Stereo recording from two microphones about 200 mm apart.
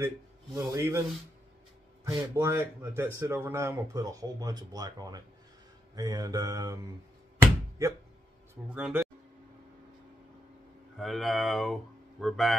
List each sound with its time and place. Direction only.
0.6 s speech: 15° right (ahead or behind)
2.0 s speech: 15° right (ahead or behind)
8.6 s speech: 5° right (ahead or behind)
11.0 s speech: centre (ahead or behind)